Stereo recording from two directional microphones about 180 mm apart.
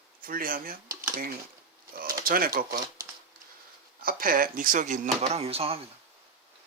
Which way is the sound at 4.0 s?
50° right (ahead or behind).